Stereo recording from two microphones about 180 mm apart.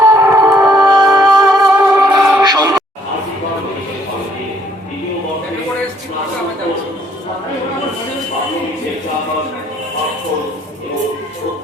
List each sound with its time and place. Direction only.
0.0 s music: 10° right (ahead or behind)
0.8 s music: 20° right (ahead or behind)
2.0 s music: 5° right (ahead or behind)
2.4 s a sound: 20° right (ahead or behind)